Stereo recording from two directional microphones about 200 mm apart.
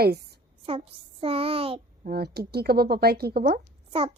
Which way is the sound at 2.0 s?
50° right (ahead or behind).